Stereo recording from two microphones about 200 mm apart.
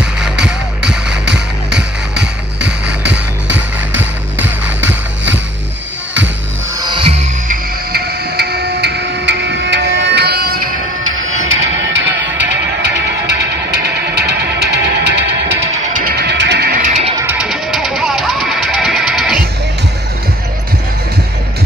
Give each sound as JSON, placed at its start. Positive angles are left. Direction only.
{"t": 0.0, "sound": "music", "side_deg": -5}
{"t": 2.6, "sound": "music", "side_deg": -60}
{"t": 7.4, "sound": "music", "side_deg": -50}
{"t": 11.4, "sound": "music", "side_deg": -65}
{"t": 17.2, "sound": "music", "side_deg": -10}